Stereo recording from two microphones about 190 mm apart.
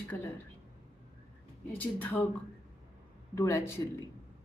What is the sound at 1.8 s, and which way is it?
Speech, 10° left (ahead or behind).